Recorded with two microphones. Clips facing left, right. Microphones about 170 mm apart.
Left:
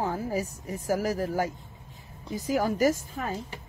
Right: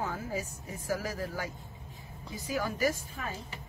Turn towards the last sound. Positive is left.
turn(degrees=45)  # may be behind; listen again after turning